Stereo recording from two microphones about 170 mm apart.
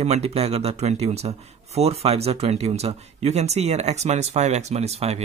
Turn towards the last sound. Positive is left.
turn(degrees=-40)  # may be behind; listen again after turning